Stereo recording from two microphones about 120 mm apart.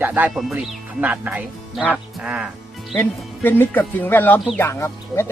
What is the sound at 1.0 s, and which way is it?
A man's voice, 15° right (ahead or behind).